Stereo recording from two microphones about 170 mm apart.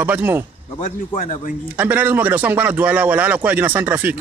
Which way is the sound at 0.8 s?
50° left (ahead or behind).